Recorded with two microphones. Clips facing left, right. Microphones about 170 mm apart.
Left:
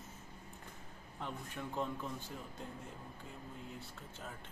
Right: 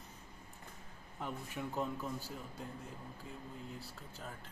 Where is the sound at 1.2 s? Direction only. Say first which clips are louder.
Right 2 dB; 10° right (ahead or behind).